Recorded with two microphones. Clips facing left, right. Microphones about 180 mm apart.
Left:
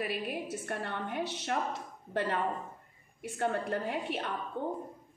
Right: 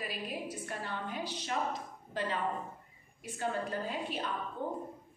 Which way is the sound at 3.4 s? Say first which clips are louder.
Left 3 dB; 65° left (ahead or behind).